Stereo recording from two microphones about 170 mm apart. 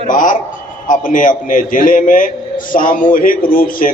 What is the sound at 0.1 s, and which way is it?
A man's voice, 50° left (ahead or behind).